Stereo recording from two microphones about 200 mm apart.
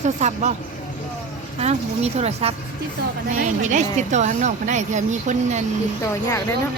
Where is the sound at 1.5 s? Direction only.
30° right (ahead or behind).